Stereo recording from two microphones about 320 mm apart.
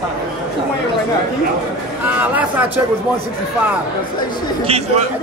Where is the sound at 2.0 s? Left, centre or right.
Centre.